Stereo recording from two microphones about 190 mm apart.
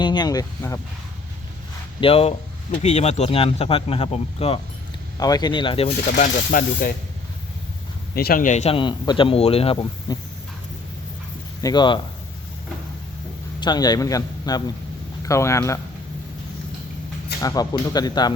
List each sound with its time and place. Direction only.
0.0 s speech: 25° left (ahead or behind)
2.0 s a man's voice: 30° left (ahead or behind)
5.2 s speech: 20° left (ahead or behind); by 6.9 s 50° left (ahead or behind)
8.1 s a man's voice: 50° left (ahead or behind); by 10.2 s 25° left (ahead or behind)
11.6 s speech: 25° left (ahead or behind)
13.6 s a man's voice: 20° left (ahead or behind)
17.4 s speech: 20° left (ahead or behind)